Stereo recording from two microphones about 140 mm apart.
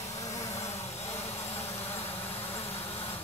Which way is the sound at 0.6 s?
50° left (ahead or behind).